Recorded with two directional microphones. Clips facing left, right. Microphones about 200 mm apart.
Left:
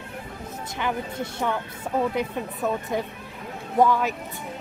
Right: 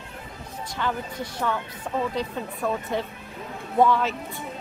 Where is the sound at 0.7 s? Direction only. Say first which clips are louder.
Left 1 dB; 15° left (ahead or behind).